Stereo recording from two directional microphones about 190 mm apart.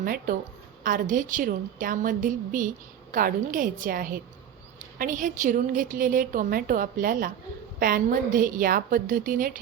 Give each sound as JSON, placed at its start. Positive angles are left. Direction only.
{"t": 0.0, "sound": "a woman's voice", "side_deg": -50}